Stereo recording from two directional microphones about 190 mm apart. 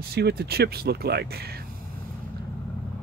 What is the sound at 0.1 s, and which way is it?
Speech, 55° right (ahead or behind).